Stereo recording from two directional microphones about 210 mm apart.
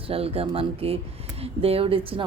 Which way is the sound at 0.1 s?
25° right (ahead or behind).